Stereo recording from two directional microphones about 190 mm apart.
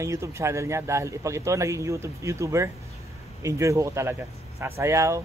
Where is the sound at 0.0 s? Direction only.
15° right (ahead or behind).